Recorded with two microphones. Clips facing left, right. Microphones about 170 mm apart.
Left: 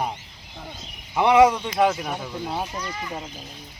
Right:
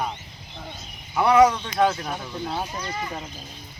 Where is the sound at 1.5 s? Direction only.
10° left (ahead or behind).